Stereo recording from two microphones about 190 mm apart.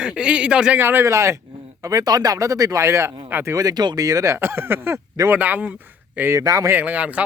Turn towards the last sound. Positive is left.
turn(degrees=-5)  # may be behind; listen again after turning